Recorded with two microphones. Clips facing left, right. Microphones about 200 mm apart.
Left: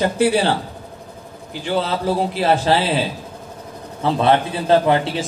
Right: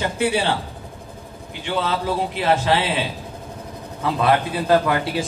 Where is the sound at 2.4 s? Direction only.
35° left (ahead or behind).